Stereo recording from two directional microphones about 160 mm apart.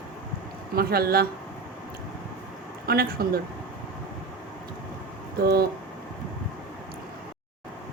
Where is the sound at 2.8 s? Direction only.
75° right (ahead or behind).